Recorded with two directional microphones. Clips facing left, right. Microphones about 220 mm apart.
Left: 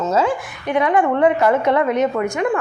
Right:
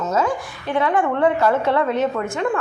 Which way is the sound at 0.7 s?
15° left (ahead or behind).